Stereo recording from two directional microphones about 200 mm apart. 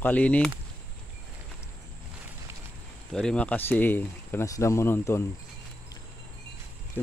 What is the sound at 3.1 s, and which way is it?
Speech, 5° left (ahead or behind).